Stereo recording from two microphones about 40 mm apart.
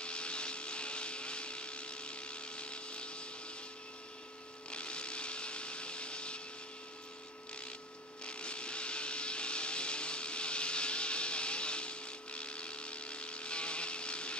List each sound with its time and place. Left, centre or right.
0.0 s vehicle: left
4.6 s blender: left
8.3 s vehicle: left